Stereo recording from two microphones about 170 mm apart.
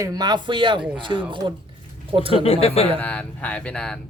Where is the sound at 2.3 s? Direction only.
35° left (ahead or behind).